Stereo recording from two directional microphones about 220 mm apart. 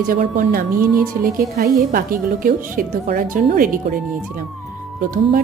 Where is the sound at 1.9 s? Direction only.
40° right (ahead or behind).